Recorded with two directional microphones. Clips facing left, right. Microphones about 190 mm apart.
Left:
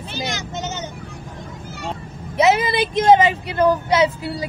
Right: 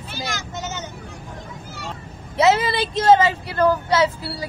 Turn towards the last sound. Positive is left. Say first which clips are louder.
# left 2 dB
turn(degrees=20)  # may be behind; listen again after turning